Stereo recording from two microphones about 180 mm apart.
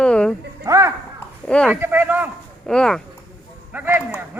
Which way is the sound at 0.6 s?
15° right (ahead or behind).